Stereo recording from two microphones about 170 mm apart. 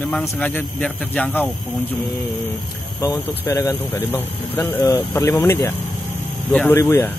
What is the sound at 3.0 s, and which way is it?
Speech, 20° left (ahead or behind).